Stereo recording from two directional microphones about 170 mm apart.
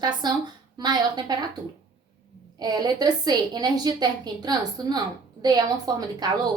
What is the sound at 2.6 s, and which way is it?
A woman's voice, 25° right (ahead or behind).